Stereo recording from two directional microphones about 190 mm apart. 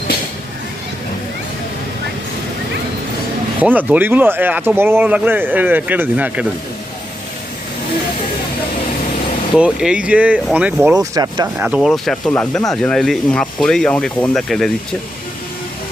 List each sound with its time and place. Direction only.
3.6 s speech: 10° right (ahead or behind)
9.6 s speech: 5° right (ahead or behind)
10.9 s speech: 20° right (ahead or behind)
11.5 s speech: 10° right (ahead or behind)